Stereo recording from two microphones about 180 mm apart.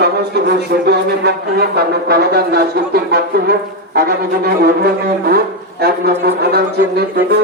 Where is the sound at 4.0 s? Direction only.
60° right (ahead or behind).